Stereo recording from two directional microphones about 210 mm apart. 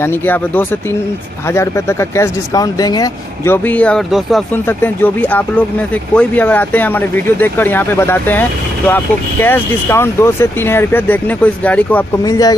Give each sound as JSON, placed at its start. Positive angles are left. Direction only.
{"t": 0.0, "sound": "speech", "side_deg": 10}
{"t": 12.3, "sound": "speech", "side_deg": 15}